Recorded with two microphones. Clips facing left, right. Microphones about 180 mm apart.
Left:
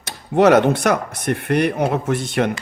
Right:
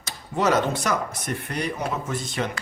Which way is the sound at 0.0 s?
65° left (ahead or behind).